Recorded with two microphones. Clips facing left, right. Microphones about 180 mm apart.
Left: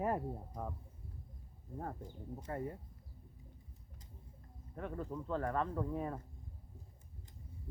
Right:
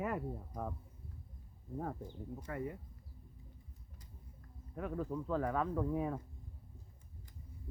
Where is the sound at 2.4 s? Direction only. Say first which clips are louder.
Even; 35° left (ahead or behind).